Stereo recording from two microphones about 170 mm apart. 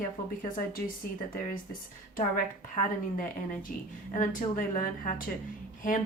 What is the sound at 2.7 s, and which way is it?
A woman's voice, 55° left (ahead or behind).